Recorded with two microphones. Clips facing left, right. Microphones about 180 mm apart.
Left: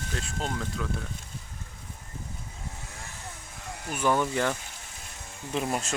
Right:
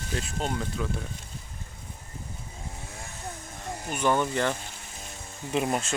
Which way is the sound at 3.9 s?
5° left (ahead or behind).